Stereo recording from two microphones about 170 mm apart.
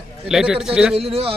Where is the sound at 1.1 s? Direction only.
35° right (ahead or behind).